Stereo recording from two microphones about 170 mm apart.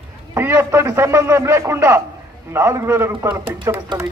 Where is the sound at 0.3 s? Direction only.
15° right (ahead or behind).